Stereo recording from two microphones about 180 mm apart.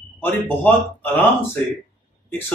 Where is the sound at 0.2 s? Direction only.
10° left (ahead or behind).